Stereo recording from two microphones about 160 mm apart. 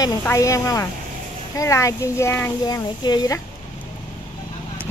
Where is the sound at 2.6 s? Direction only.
25° left (ahead or behind).